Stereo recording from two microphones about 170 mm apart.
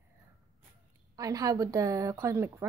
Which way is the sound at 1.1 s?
20° right (ahead or behind).